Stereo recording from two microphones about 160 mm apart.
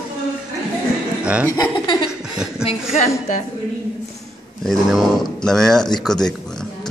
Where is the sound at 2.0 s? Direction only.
5° right (ahead or behind).